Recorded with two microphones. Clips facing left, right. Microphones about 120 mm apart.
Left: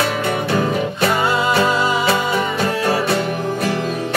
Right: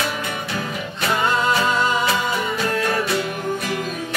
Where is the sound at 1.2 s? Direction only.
10° left (ahead or behind).